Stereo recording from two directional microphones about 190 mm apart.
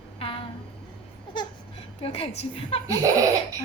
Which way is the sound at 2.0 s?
30° left (ahead or behind).